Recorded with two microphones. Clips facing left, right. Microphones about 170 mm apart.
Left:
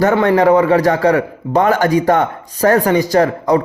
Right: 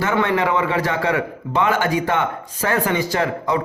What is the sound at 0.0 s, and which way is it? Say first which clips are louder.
A man's voice: left 8 dB; 40° left (ahead or behind).